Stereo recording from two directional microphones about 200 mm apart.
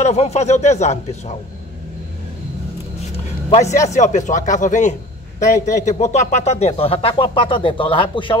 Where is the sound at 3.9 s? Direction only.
35° left (ahead or behind).